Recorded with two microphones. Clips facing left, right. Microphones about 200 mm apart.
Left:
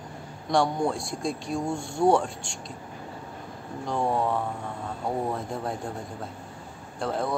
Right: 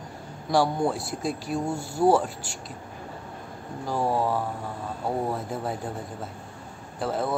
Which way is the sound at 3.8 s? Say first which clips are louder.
Right 1 dB; 5° right (ahead or behind).